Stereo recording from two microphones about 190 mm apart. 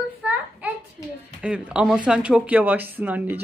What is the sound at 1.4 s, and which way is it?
Speech, 5° right (ahead or behind).